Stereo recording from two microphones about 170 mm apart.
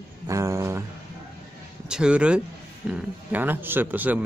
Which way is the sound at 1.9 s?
5° right (ahead or behind).